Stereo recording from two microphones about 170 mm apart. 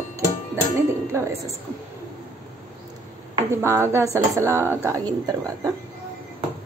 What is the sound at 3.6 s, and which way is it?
Speech, 15° right (ahead or behind).